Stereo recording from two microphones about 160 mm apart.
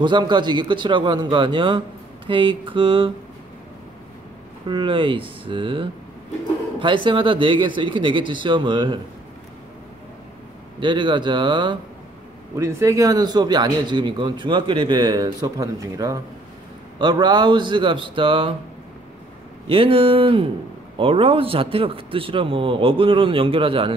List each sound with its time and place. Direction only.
0.0 s a man's voice: 30° right (ahead or behind)
4.6 s a man's voice: 30° right (ahead or behind)
10.8 s speech: 30° right (ahead or behind)
12.5 s speech: 15° right (ahead or behind); by 18.5 s 35° right (ahead or behind)
19.7 s a man's voice: 35° right (ahead or behind)